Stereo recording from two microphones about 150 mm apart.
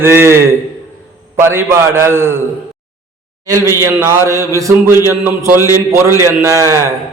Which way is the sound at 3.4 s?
20° right (ahead or behind).